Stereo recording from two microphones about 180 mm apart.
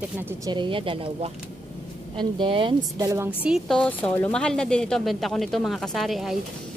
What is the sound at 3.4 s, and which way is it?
Speech, centre (ahead or behind).